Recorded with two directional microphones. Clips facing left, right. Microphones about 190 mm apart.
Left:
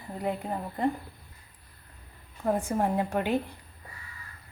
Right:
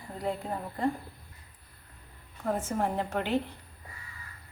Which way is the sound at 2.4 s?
15° left (ahead or behind).